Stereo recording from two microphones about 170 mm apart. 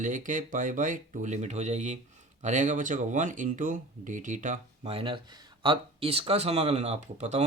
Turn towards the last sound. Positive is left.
turn(degrees=-40)  # may be behind; listen again after turning